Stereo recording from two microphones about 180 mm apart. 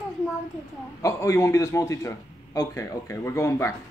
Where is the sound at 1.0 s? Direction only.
15° left (ahead or behind).